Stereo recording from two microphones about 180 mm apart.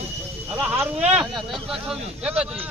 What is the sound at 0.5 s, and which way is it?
Speech, centre (ahead or behind).